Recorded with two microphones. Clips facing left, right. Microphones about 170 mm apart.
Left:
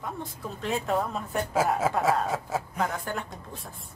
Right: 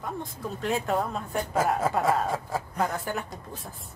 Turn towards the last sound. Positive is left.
turn(degrees=0)  # may be behind; listen again after turning